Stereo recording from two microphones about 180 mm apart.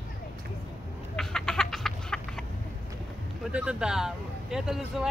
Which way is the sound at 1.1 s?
5° left (ahead or behind).